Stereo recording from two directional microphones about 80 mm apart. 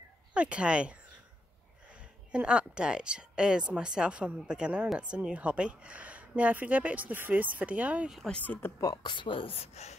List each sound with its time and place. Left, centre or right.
0.3 s speech: centre
2.0 s a woman's voice: centre
8.3 s speech: centre
8.5 s speech: left
9.0 s speech: left